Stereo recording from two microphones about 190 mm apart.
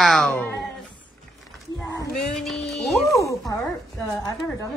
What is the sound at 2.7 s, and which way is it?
Music, centre (ahead or behind).